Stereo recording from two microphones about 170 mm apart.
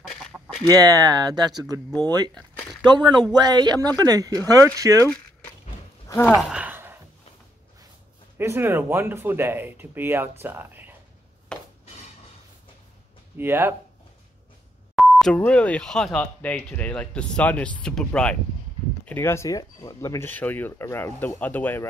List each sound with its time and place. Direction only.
0.1 s chicken: centre (ahead or behind)
0.7 s speech: 25° right (ahead or behind)
6.0 s speech: 15° left (ahead or behind)
6.5 s a sound: 10° right (ahead or behind)
8.4 s speech: 15° right (ahead or behind)
11.5 s a sound: 5° left (ahead or behind)
13.4 s speech: 15° right (ahead or behind)
15.0 s speech: centre (ahead or behind)